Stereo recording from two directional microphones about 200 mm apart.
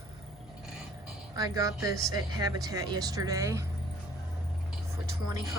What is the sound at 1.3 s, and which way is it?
Speech, 20° right (ahead or behind).